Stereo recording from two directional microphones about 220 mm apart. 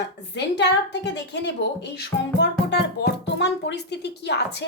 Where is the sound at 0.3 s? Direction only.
50° left (ahead or behind).